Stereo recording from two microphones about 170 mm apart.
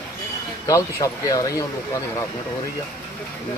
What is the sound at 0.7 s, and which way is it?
Speech, 20° left (ahead or behind).